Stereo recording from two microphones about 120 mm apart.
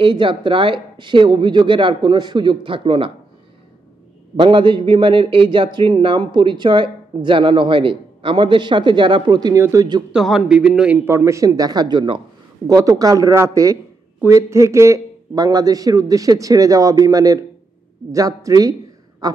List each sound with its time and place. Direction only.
0.0 s a man's voice: 45° right (ahead or behind)
4.4 s a man's voice: 45° right (ahead or behind)
9.6 s a man's voice: 25° right (ahead or behind)
10.1 s a man's voice: 5° right (ahead or behind)
11.1 s a man's voice: 20° right (ahead or behind)